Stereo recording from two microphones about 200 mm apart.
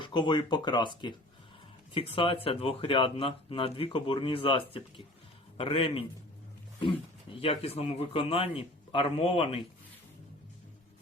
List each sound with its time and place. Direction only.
0.0 s speech: 25° left (ahead or behind)